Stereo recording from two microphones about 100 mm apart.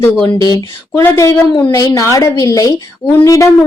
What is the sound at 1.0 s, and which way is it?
Speech, 30° left (ahead or behind).